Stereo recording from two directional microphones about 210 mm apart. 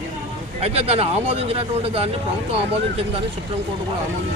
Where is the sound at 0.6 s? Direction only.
30° right (ahead or behind).